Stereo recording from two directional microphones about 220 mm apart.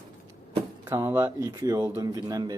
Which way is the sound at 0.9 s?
10° right (ahead or behind).